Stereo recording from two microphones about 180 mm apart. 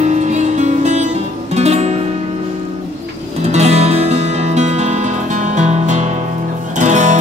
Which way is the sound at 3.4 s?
35° right (ahead or behind).